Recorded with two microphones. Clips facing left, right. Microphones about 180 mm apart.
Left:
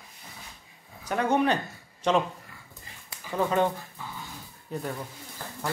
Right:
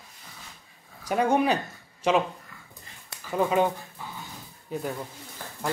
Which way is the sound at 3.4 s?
10° right (ahead or behind).